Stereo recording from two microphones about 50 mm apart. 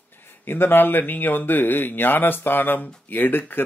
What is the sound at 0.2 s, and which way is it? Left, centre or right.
Speech, left.